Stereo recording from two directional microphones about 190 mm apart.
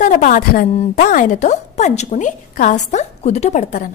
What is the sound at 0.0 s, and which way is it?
A woman's voice, 45° left (ahead or behind).